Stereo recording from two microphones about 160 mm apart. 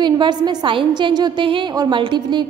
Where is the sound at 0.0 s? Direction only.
30° right (ahead or behind).